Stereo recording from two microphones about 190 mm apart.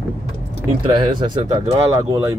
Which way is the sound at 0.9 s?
25° right (ahead or behind).